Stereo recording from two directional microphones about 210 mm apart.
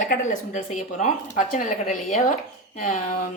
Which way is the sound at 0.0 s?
40° left (ahead or behind).